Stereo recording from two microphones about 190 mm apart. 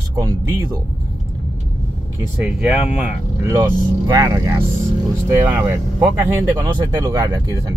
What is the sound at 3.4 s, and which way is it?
Speech, 15° right (ahead or behind).